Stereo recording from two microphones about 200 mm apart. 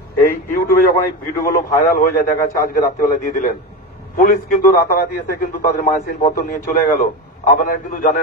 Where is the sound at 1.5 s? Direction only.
45° left (ahead or behind).